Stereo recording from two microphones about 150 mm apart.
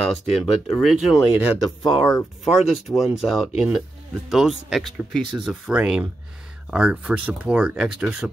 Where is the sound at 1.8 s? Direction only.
30° left (ahead or behind).